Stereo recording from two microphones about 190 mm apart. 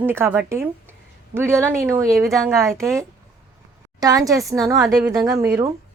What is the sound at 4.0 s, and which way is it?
A woman's voice, 20° right (ahead or behind).